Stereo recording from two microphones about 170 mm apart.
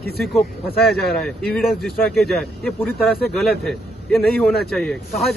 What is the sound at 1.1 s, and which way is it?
A man's voice, centre (ahead or behind).